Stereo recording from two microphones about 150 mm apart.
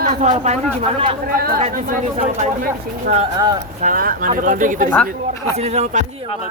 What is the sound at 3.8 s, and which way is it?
Speech, 65° right (ahead or behind).